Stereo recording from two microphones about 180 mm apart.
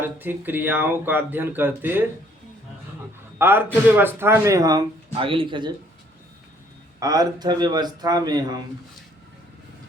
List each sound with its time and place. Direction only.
0.0 s speech: 10° right (ahead or behind)
3.3 s a man's voice: 10° right (ahead or behind)
7.0 s speech: 20° right (ahead or behind)